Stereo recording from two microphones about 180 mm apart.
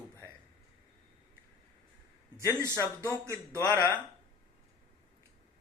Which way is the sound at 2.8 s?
15° left (ahead or behind).